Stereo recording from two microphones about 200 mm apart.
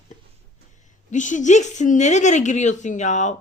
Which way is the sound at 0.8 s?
40° left (ahead or behind).